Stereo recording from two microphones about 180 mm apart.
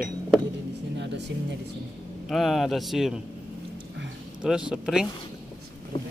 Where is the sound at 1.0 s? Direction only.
75° right (ahead or behind).